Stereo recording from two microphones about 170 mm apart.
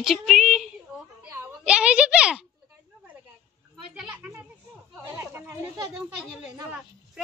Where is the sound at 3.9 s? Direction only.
10° right (ahead or behind).